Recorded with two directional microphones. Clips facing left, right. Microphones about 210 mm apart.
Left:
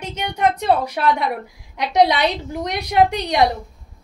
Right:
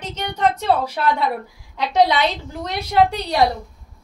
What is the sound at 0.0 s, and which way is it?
A woman's voice, 10° left (ahead or behind).